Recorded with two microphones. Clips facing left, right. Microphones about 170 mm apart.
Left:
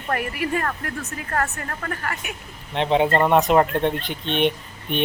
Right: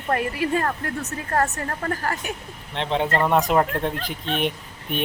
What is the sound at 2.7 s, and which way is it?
Speech, 10° left (ahead or behind).